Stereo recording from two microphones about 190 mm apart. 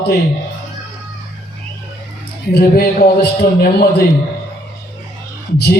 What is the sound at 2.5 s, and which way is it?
A man's voice, 55° left (ahead or behind).